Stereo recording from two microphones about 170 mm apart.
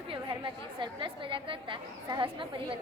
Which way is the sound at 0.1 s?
30° right (ahead or behind).